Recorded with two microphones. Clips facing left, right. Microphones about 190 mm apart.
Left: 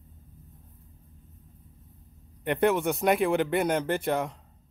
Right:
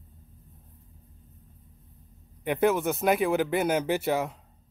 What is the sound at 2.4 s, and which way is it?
Speech, centre (ahead or behind).